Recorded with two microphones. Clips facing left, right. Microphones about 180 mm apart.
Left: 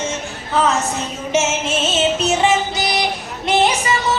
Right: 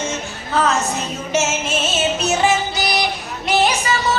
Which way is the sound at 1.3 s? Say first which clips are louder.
Left 2 dB; 25° left (ahead or behind).